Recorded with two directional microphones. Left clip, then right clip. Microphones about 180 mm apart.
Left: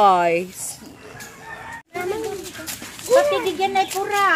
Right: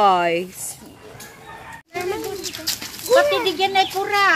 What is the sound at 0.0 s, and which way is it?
Speech, centre (ahead or behind).